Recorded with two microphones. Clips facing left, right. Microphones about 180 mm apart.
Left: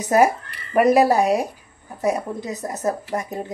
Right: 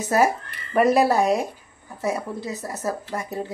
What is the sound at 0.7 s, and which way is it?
Speech, 10° left (ahead or behind).